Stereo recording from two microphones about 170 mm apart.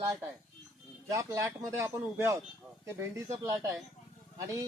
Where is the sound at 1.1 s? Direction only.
15° right (ahead or behind).